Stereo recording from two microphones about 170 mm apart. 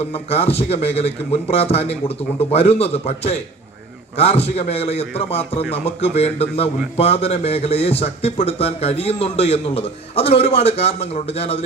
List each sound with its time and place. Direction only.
0.0 s a man's voice: 35° left (ahead or behind)